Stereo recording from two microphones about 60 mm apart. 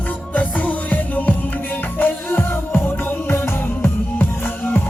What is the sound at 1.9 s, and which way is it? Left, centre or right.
Music, left.